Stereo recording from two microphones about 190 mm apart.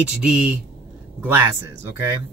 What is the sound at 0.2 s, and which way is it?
Speech, 5° right (ahead or behind).